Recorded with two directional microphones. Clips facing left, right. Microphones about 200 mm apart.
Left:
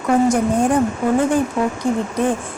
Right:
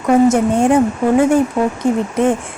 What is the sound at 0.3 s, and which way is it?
Speech, 25° right (ahead or behind).